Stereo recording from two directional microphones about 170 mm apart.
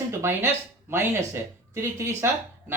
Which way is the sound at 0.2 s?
15° right (ahead or behind).